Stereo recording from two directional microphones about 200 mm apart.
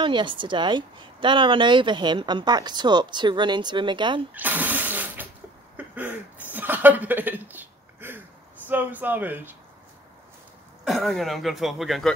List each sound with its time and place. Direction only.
0.0 s a woman's voice: 25° right (ahead or behind)
4.3 s a sound: 10° right (ahead or behind)
8.6 s speech: 10° right (ahead or behind)
10.9 s speech: centre (ahead or behind)